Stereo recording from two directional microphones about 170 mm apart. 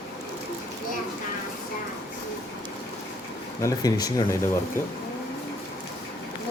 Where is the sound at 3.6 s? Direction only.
20° left (ahead or behind).